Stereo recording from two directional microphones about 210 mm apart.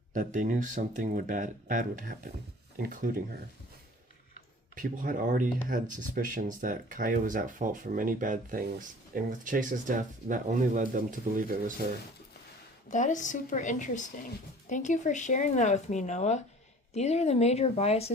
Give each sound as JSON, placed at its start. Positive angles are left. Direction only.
{"t": 0.1, "sound": "speech", "side_deg": -40}
{"t": 4.7, "sound": "speech", "side_deg": -40}
{"t": 12.9, "sound": "speech", "side_deg": 35}